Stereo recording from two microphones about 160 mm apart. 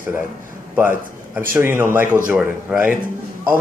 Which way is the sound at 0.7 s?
15° right (ahead or behind).